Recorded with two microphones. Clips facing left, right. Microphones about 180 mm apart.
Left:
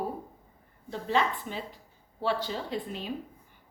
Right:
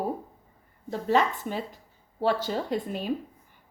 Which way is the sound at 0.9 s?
45° right (ahead or behind).